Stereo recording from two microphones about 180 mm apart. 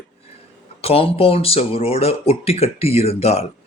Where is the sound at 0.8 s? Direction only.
35° left (ahead or behind).